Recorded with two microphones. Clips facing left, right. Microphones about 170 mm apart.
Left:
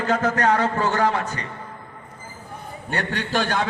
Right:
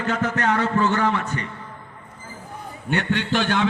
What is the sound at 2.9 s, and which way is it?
Speech, 35° left (ahead or behind).